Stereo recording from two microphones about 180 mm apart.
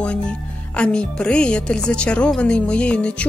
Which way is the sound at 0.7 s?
5° left (ahead or behind).